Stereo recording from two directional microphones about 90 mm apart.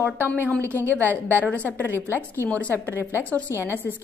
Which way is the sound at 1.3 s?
20° right (ahead or behind).